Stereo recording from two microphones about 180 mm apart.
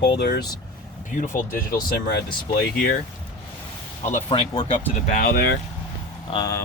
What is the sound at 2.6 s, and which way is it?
Speech, 60° left (ahead or behind).